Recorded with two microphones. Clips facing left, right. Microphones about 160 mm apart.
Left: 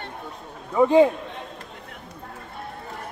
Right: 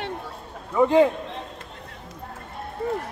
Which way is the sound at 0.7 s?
10° left (ahead or behind).